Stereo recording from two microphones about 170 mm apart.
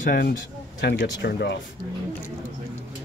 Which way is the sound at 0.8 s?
90° left.